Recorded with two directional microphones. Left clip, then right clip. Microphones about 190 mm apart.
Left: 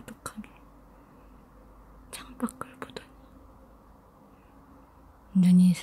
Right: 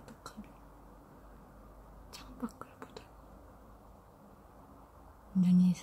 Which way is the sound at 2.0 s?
30° left (ahead or behind).